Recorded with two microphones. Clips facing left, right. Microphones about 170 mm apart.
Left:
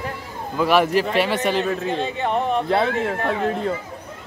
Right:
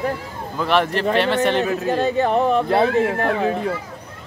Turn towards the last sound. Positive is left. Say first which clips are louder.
# right 2 dB
turn(degrees=0)  # may be behind; listen again after turning